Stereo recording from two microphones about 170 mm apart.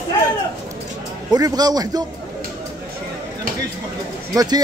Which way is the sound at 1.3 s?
25° right (ahead or behind).